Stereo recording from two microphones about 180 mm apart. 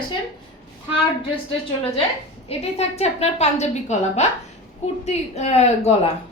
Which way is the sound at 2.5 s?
35° left (ahead or behind).